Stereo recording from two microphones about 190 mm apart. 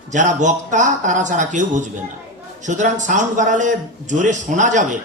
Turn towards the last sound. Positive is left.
turn(degrees=-40)  # may be behind; listen again after turning